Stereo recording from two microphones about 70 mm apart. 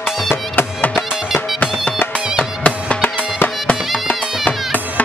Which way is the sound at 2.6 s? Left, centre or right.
Centre.